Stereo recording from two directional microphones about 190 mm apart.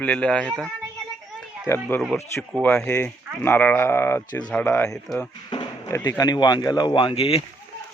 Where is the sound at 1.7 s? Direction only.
10° left (ahead or behind).